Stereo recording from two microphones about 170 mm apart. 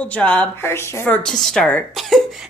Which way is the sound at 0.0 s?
10° left (ahead or behind).